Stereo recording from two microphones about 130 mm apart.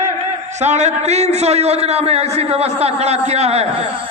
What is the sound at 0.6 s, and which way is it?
A man's voice, 60° right (ahead or behind).